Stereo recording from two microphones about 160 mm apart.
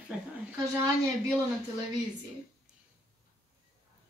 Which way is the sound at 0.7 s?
15° right (ahead or behind).